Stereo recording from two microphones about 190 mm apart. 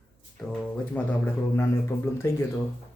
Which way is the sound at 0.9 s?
10° left (ahead or behind).